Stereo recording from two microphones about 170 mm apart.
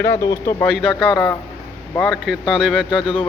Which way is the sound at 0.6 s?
Centre (ahead or behind).